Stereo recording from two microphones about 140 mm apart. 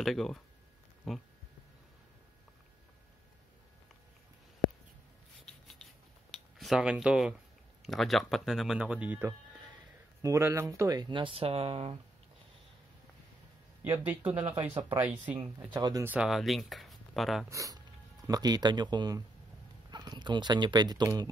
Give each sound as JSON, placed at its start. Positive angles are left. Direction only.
{"t": 0.0, "sound": "speech", "side_deg": 0}
{"t": 5.5, "sound": "a sound", "side_deg": 5}
{"t": 6.3, "sound": "speech", "side_deg": 0}
{"t": 13.8, "sound": "speech", "side_deg": -15}
{"t": 15.7, "sound": "speech", "side_deg": -30}
{"t": 16.0, "sound": "speech", "side_deg": -10}
{"t": 16.3, "sound": "speech", "side_deg": 0}
{"t": 17.5, "sound": "speech", "side_deg": -25}